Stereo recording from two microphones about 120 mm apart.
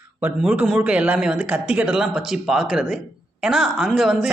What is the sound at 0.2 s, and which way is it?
A man's voice, 15° right (ahead or behind).